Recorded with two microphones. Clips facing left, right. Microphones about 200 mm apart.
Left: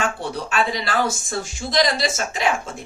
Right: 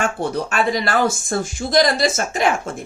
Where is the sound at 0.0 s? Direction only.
50° right (ahead or behind).